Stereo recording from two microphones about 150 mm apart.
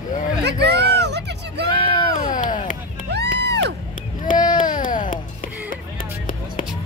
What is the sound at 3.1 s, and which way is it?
Music, 90° right.